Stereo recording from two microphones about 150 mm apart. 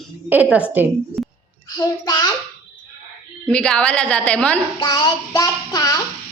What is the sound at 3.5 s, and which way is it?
A woman's voice, 5° left (ahead or behind).